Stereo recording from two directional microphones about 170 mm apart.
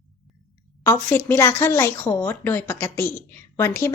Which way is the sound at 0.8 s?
15° left (ahead or behind).